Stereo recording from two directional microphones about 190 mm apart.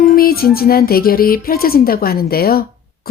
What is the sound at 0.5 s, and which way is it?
Speech, 50° left (ahead or behind).